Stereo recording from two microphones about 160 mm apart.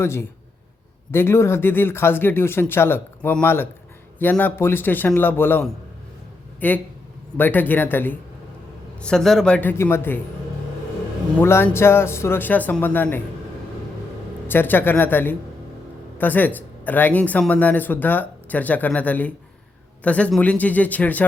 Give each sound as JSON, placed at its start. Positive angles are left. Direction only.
{"t": 0.0, "sound": "speech", "side_deg": 15}
{"t": 11.3, "sound": "speech", "side_deg": 15}
{"t": 14.4, "sound": "speech", "side_deg": 15}